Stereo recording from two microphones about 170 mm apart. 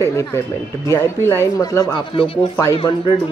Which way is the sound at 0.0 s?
15° left (ahead or behind).